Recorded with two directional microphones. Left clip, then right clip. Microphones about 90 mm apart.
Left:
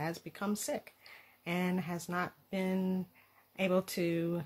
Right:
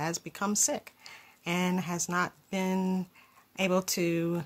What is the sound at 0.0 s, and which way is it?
Speech, 30° right (ahead or behind).